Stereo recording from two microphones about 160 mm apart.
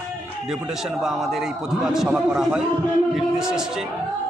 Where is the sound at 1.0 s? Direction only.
Centre (ahead or behind).